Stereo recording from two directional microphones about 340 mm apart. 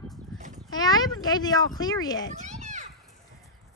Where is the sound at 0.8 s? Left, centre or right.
Centre.